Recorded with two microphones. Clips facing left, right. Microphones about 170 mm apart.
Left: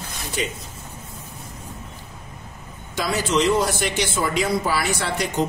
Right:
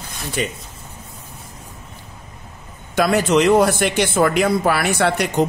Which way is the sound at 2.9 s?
60° right (ahead or behind).